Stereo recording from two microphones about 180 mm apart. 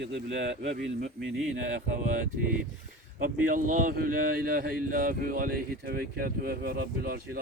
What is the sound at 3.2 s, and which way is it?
Speech, 50° right (ahead or behind).